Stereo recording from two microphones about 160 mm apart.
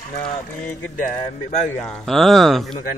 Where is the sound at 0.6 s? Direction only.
10° left (ahead or behind).